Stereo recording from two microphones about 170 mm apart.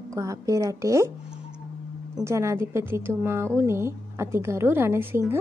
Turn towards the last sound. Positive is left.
turn(degrees=-15)  # may be behind; listen again after turning